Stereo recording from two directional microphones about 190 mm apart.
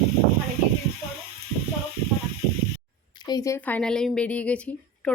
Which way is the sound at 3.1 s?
20° left (ahead or behind).